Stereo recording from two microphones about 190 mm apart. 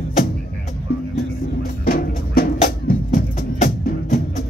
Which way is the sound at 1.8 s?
50° left (ahead or behind).